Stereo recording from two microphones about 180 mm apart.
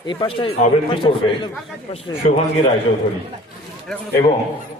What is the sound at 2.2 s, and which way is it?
Speech, 40° left (ahead or behind).